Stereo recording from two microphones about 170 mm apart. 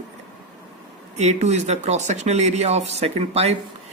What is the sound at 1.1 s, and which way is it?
Speech, 40° right (ahead or behind).